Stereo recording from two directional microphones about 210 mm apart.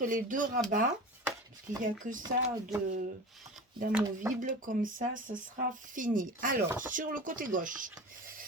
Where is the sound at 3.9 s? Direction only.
10° right (ahead or behind).